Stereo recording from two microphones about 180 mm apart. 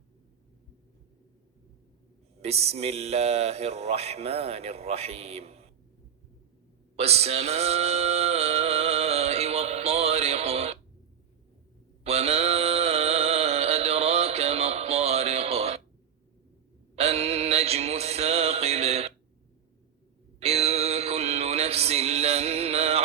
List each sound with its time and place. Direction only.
2.4 s speech: 35° right (ahead or behind)
6.9 s male singing: 35° right (ahead or behind)
12.0 s music: 35° right (ahead or behind)
16.9 s music: 35° right (ahead or behind)
20.4 s music: 35° right (ahead or behind)